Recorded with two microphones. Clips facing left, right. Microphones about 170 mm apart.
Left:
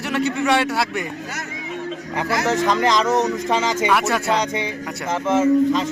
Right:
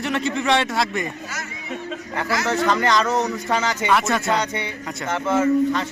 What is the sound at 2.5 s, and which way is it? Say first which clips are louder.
Speech: left 1 dB; 20° left (ahead or behind).